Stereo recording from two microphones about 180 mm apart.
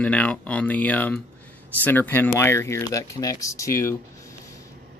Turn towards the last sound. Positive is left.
turn(degrees=15)  # may be behind; listen again after turning